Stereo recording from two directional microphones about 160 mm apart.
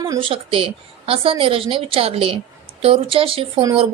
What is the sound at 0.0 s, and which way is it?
A woman's voice, 30° right (ahead or behind).